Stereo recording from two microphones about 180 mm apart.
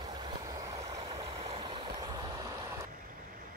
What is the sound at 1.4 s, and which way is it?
Vehicle, 30° right (ahead or behind).